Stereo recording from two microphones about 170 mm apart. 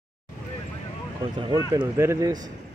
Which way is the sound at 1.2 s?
30° right (ahead or behind).